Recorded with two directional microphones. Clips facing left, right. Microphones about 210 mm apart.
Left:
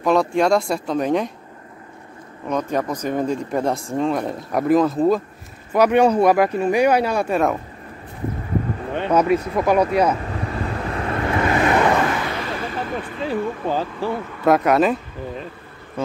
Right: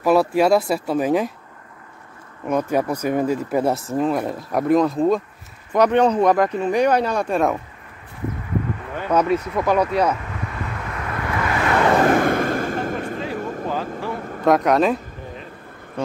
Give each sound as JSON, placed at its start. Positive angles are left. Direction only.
{"t": 0.0, "sound": "speech", "side_deg": -5}
{"t": 2.4, "sound": "speech", "side_deg": -10}
{"t": 8.5, "sound": "a sound", "side_deg": 35}
{"t": 9.1, "sound": "speech", "side_deg": 10}
{"t": 9.4, "sound": "speech", "side_deg": 30}
{"t": 10.1, "sound": "vehicle", "side_deg": 35}
{"t": 12.1, "sound": "artillery fire", "side_deg": -50}
{"t": 13.8, "sound": "vehicle", "side_deg": -45}
{"t": 14.4, "sound": "speech", "side_deg": 5}